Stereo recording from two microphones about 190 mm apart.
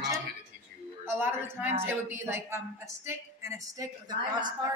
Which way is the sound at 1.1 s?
10° right (ahead or behind).